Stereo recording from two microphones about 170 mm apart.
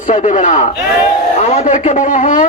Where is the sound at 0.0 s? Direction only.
45° left (ahead or behind).